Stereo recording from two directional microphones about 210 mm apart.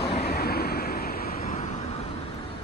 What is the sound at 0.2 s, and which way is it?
Vehicle, 45° left (ahead or behind).